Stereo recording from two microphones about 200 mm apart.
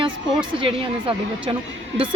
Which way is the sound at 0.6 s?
25° right (ahead or behind).